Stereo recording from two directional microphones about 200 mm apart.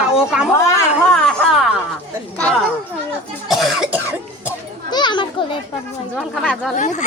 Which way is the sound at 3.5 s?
Centre (ahead or behind).